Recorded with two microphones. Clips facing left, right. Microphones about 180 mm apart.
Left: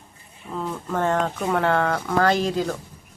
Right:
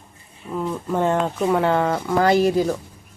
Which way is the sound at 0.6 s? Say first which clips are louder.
Right 3 dB; 15° right (ahead or behind).